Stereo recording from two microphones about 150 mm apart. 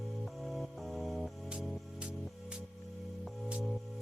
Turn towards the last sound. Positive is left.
turn(degrees=-5)  # may be behind; listen again after turning